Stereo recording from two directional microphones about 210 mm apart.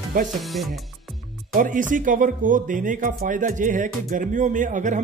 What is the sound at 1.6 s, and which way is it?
Speech, 40° right (ahead or behind).